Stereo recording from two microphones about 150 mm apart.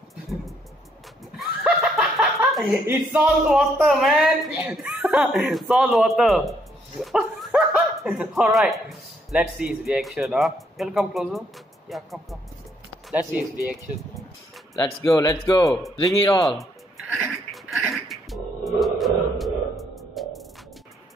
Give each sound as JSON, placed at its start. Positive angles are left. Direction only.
{"t": 1.4, "sound": "snicker", "side_deg": -5}
{"t": 2.9, "sound": "speech", "side_deg": -10}
{"t": 13.1, "sound": "speech", "side_deg": -10}
{"t": 15.0, "sound": "speech", "side_deg": 20}
{"t": 16.2, "sound": "speech", "side_deg": 35}
{"t": 17.1, "sound": "a sound", "side_deg": 0}